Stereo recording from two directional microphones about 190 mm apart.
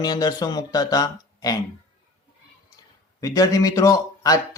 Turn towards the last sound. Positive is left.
turn(degrees=20)  # may be behind; listen again after turning